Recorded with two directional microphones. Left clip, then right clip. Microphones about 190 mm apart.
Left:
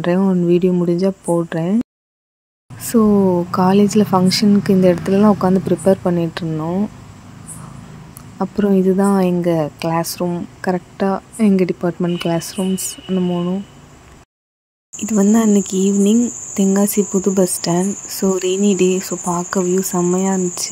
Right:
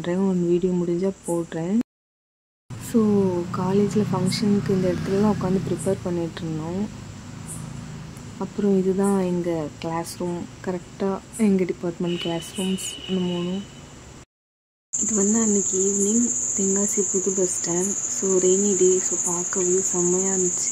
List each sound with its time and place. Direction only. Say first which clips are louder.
0.0 s speech: left 7 dB; 30° left (ahead or behind)
2.9 s cricket: left 7 dB; 45° left (ahead or behind)
3.5 s speech: left 9 dB; 40° left (ahead or behind)
8.4 s speech: left 6 dB; 35° left (ahead or behind)
15.0 s cricket: left 8 dB; 45° left (ahead or behind)